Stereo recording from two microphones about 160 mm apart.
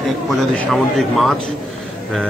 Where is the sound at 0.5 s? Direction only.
Centre (ahead or behind).